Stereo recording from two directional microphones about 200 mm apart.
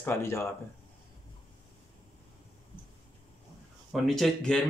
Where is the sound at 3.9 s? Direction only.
Centre (ahead or behind).